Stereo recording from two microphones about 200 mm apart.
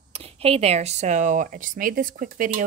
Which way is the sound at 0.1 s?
30° right (ahead or behind).